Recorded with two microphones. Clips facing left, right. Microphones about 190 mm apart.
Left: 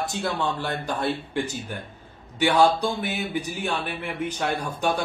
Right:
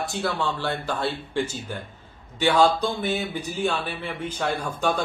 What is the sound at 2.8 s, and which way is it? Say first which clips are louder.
A man's voice: right 1 dB; 15° left (ahead or behind).